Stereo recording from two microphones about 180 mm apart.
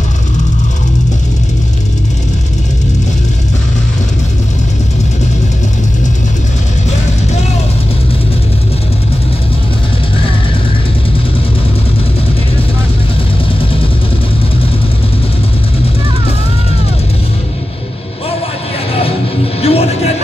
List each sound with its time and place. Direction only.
18.9 s music: 30° left (ahead or behind)